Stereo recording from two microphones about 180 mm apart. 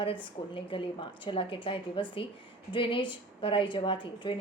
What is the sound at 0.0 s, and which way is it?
A woman's voice, 30° left (ahead or behind).